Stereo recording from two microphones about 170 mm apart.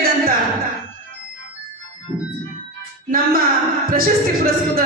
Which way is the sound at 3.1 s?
60° right (ahead or behind).